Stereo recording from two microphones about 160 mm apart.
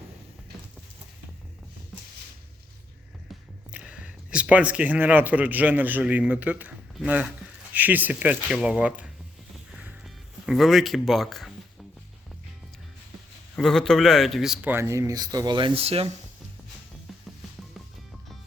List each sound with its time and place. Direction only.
3.7 s speech: 10° right (ahead or behind)
9.7 s music: 5° right (ahead or behind)
13.6 s speech: 5° left (ahead or behind); by 16.1 s 40° right (ahead or behind)